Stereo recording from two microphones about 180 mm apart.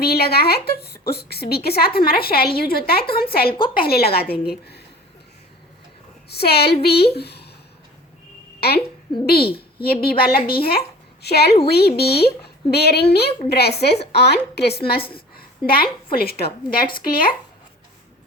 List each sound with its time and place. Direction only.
0.0 s a woman's voice: 60° left (ahead or behind)
6.2 s a woman's voice: 60° left (ahead or behind)
9.2 s a child's voice: 60° left (ahead or behind)
15.1 s a sound: 55° left (ahead or behind)
16.1 s a woman's voice: 60° left (ahead or behind)